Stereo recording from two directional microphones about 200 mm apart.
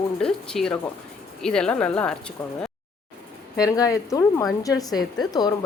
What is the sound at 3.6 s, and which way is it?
A woman's voice, 20° left (ahead or behind).